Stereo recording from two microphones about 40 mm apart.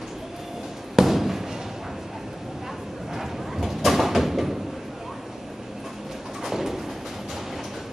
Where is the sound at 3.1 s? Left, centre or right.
Centre.